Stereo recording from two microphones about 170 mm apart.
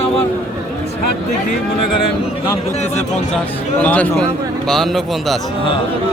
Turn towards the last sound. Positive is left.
turn(degrees=0)  # may be behind; listen again after turning